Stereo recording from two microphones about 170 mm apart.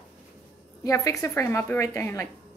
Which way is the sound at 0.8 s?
20° left (ahead or behind).